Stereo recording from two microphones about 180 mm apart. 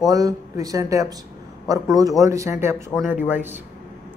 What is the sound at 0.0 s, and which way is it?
Speech, 20° right (ahead or behind).